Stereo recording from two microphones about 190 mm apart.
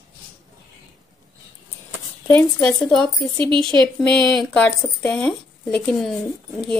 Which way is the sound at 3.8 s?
5° left (ahead or behind).